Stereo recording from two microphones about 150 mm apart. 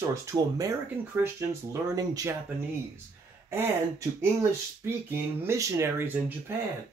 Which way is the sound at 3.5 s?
15° right (ahead or behind).